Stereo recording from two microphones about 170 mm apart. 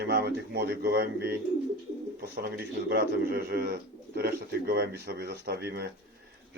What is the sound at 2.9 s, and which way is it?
Speech, 65° right (ahead or behind).